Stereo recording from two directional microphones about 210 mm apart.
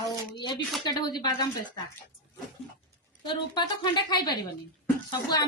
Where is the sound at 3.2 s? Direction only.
20° left (ahead or behind).